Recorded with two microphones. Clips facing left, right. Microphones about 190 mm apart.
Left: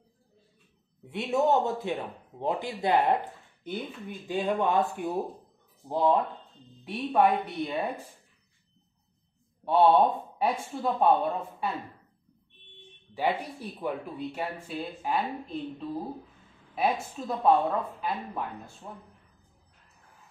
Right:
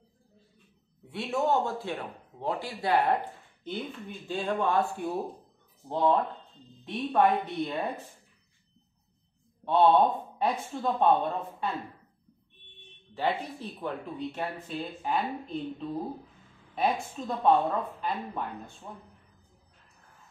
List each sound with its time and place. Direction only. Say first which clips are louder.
1.1 s speech: left 3 dB; 20° left (ahead or behind)
4.3 s speech: left 2 dB; 15° left (ahead or behind)
5.9 s speech: left 1 dB; 10° left (ahead or behind)
9.7 s speech: left 1 dB; 5° left (ahead or behind)
13.1 s a woman's voice: left 1 dB; 10° left (ahead or behind)